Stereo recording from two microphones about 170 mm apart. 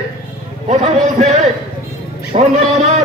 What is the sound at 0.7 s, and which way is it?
A man's voice, 40° right (ahead or behind).